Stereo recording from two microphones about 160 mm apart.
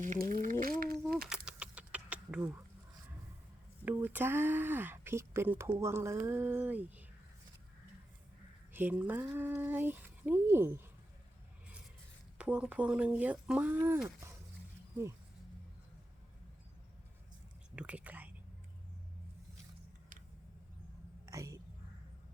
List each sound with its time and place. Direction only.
0.0 s a sound: 55° right (ahead or behind)
1.5 s a sound: 5° right (ahead or behind)
3.8 s speech: 10° right (ahead or behind)
8.7 s speech: 10° right (ahead or behind)
12.4 s speech: 10° right (ahead or behind)
17.7 s whispering: 10° right (ahead or behind)
21.2 s whispering: 20° right (ahead or behind)